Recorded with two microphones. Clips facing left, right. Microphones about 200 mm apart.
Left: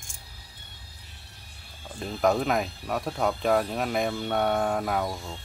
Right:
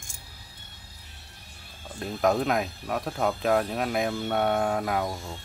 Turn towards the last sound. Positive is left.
turn(degrees=-5)  # may be behind; listen again after turning